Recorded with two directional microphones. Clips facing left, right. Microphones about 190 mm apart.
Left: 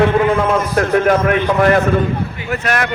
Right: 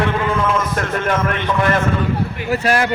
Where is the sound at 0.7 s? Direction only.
40° left (ahead or behind).